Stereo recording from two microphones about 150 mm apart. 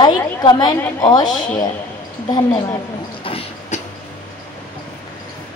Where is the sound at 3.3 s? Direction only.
40° left (ahead or behind).